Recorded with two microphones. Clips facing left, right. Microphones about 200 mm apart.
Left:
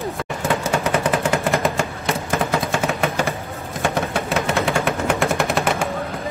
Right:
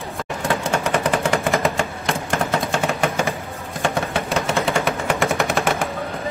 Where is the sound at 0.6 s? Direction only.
Centre (ahead or behind).